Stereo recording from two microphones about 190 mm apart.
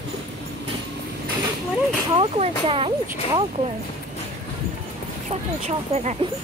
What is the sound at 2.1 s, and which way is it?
Speech, 30° right (ahead or behind).